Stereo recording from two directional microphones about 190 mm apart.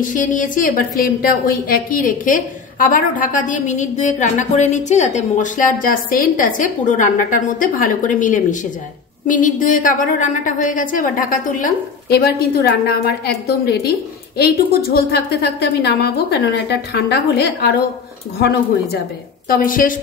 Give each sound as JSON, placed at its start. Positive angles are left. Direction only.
{"t": 0.0, "sound": "a woman's voice", "side_deg": 45}
{"t": 19.5, "sound": "a woman's voice", "side_deg": 45}